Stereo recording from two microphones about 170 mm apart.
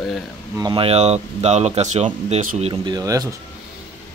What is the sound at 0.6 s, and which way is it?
Speech, 30° right (ahead or behind).